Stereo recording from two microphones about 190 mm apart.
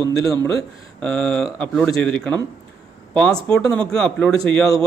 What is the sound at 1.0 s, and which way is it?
Speech, 5° left (ahead or behind).